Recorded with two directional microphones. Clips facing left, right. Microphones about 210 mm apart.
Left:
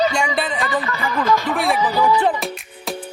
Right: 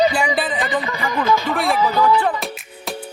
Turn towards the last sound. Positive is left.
turn(degrees=0)  # may be behind; listen again after turning